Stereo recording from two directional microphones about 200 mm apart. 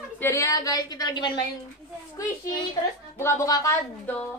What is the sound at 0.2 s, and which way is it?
A woman's voice, 15° left (ahead or behind).